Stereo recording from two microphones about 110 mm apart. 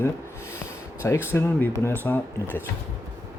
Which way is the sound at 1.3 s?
25° left (ahead or behind).